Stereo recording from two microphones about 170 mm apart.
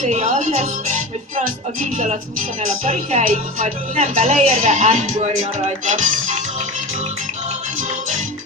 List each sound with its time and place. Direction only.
0.0 s speech: 40° right (ahead or behind)